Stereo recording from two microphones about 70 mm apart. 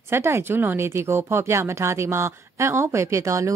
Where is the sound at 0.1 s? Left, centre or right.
Right.